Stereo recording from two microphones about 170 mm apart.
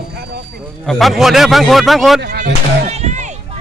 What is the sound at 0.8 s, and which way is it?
A man's voice, centre (ahead or behind).